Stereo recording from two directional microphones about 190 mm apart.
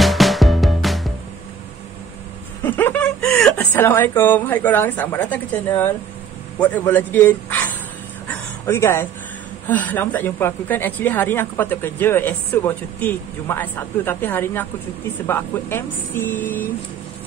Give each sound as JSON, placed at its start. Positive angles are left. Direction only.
{"t": 0.0, "sound": "music", "side_deg": 0}
{"t": 2.6, "sound": "a sound", "side_deg": 10}
{"t": 4.2, "sound": "speech", "side_deg": 10}
{"t": 6.6, "sound": "speech", "side_deg": 10}
{"t": 8.6, "sound": "speech", "side_deg": 15}